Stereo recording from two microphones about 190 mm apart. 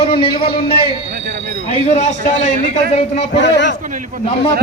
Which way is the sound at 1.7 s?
35° left (ahead or behind).